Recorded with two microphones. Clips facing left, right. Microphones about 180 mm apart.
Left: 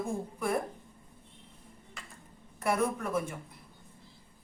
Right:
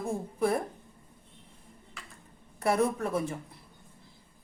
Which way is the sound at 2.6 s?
30° right (ahead or behind).